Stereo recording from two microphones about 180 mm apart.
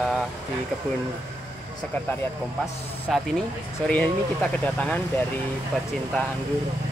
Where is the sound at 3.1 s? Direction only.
5° left (ahead or behind).